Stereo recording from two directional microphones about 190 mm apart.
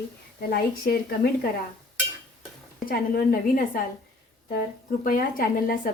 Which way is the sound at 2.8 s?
50° left (ahead or behind).